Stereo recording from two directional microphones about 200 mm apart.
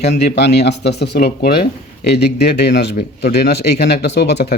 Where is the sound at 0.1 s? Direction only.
55° left (ahead or behind).